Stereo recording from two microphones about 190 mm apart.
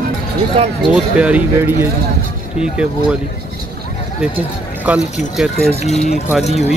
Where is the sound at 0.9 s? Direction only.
5° right (ahead or behind).